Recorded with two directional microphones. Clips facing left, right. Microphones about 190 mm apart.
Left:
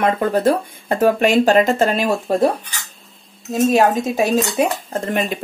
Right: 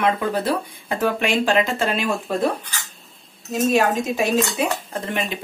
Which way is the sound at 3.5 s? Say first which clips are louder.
Left 4 dB; 40° left (ahead or behind).